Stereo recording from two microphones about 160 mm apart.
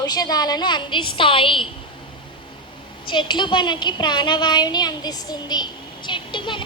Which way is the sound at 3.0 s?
30° left (ahead or behind).